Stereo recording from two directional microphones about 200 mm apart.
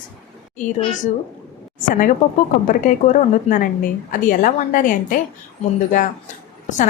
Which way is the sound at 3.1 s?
40° left (ahead or behind).